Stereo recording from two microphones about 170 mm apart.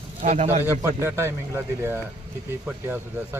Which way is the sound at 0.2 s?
45° right (ahead or behind).